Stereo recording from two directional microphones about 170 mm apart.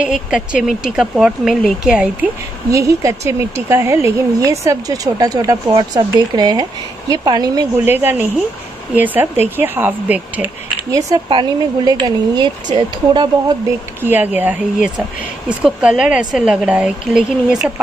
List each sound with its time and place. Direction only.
0.0 s speech: 5° right (ahead or behind)
2.7 s speech: 20° right (ahead or behind)
14.0 s speech: 10° right (ahead or behind)